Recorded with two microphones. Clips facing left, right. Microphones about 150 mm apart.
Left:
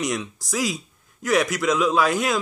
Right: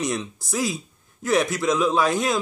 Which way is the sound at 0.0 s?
25° right (ahead or behind).